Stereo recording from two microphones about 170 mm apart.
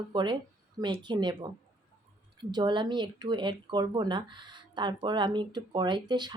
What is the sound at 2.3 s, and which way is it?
Speech, 25° right (ahead or behind).